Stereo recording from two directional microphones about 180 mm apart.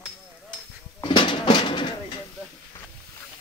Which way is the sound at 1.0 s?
25° left (ahead or behind).